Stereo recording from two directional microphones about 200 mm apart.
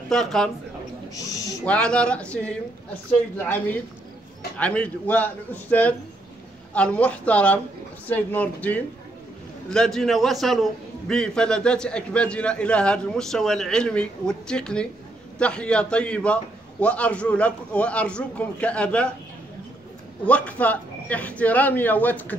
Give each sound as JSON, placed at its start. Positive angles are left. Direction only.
{"t": 0.1, "sound": "a man's voice", "side_deg": 0}
{"t": 1.1, "sound": "a man's voice", "side_deg": 15}
{"t": 1.7, "sound": "a man's voice", "side_deg": 5}
{"t": 20.2, "sound": "speech", "side_deg": 5}